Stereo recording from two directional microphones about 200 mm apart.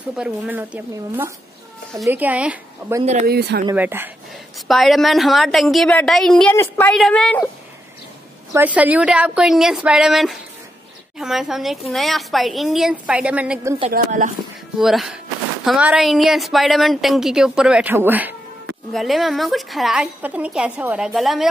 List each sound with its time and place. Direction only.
0.1 s speech: 5° right (ahead or behind)
3.3 s speech: 50° right (ahead or behind)
3.7 s a woman's voice: 10° right (ahead or behind)
8.5 s a woman's voice: 5° right (ahead or behind)
13.9 s speech: 40° right (ahead or behind)
14.8 s a woman's voice: centre (ahead or behind)